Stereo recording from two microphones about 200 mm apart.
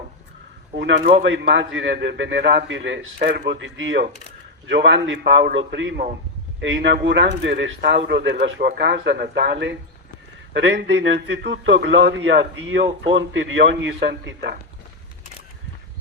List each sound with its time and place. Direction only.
0.8 s speech: 60° right (ahead or behind)
3.2 s speech: 55° right (ahead or behind)